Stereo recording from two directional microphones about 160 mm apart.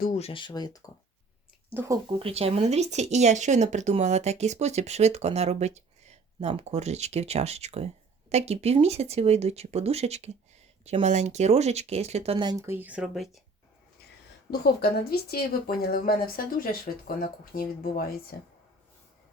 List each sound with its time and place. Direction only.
0.2 s speech: 35° left (ahead or behind)
1.7 s speech: 15° right (ahead or behind)
2.0 s speech: 35° right (ahead or behind)
12.6 s speech: 10° right (ahead or behind)
14.5 s speech: 90° left; by 18.3 s 65° left (ahead or behind)